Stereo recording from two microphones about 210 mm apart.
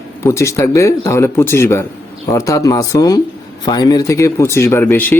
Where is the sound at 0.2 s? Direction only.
15° left (ahead or behind).